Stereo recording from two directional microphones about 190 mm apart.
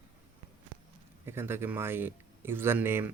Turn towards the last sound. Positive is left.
turn(degrees=-10)  # may be behind; listen again after turning